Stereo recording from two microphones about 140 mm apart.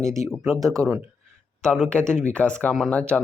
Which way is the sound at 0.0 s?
20° right (ahead or behind).